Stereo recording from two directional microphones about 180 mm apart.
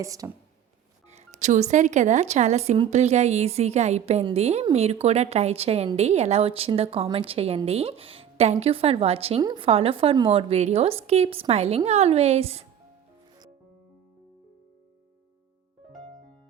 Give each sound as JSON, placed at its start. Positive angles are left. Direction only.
{"t": 0.0, "sound": "speech", "side_deg": -20}
{"t": 1.1, "sound": "a woman's voice", "side_deg": -40}